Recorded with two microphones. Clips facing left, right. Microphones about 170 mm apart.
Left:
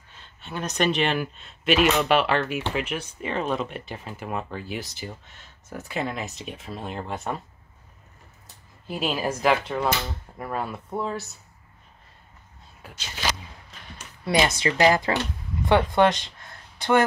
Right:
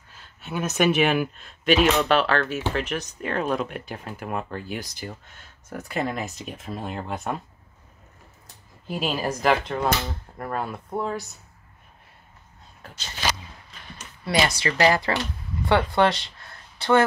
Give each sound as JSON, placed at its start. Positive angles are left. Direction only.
{"t": 0.1, "sound": "speech", "side_deg": -5}
{"t": 8.8, "sound": "speech", "side_deg": 0}
{"t": 13.9, "sound": "speech", "side_deg": 15}